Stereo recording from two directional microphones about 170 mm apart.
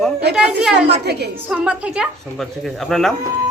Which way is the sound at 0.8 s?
75° right (ahead or behind).